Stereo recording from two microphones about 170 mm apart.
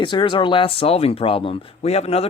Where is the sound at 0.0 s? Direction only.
30° left (ahead or behind).